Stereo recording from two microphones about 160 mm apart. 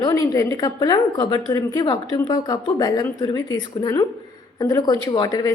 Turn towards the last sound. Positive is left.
turn(degrees=25)  # may be behind; listen again after turning